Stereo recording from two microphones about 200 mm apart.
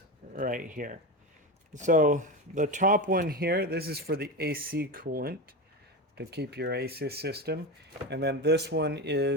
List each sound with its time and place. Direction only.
0.3 s speech: 45° right (ahead or behind); by 9.3 s 60° right (ahead or behind)